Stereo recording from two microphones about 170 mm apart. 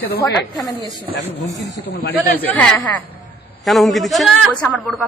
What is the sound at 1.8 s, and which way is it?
Speech, 75° left (ahead or behind).